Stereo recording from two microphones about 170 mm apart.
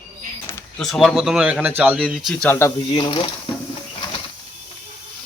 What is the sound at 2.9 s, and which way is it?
Speech, 30° left (ahead or behind).